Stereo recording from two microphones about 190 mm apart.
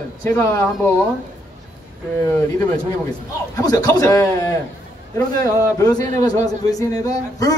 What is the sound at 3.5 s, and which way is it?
Speech, 20° left (ahead or behind).